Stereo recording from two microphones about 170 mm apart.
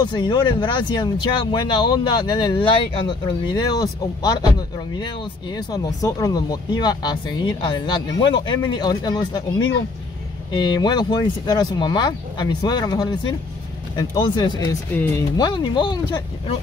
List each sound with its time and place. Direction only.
0.0 s speech: 25° left (ahead or behind)
14.9 s speech: 10° left (ahead or behind)
15.3 s speech: 25° left (ahead or behind)